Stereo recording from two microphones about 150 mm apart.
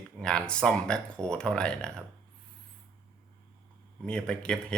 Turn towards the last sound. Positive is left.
turn(degrees=5)  # may be behind; listen again after turning